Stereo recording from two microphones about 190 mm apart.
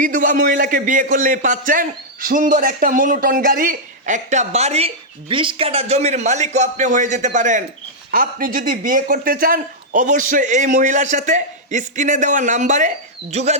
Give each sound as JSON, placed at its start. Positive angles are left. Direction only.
{"t": 0.0, "sound": "a man's voice", "side_deg": -45}